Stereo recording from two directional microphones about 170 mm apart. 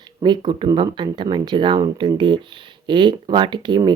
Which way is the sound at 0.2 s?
25° right (ahead or behind).